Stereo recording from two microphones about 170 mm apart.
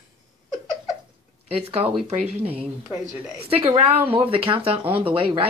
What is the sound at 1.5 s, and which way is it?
Speech, 35° right (ahead or behind).